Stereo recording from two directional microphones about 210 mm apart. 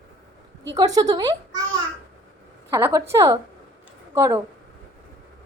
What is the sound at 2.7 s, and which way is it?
A woman's voice, 15° right (ahead or behind).